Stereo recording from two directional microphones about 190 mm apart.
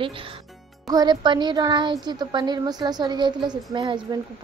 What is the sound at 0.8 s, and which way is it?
Speech, 20° right (ahead or behind).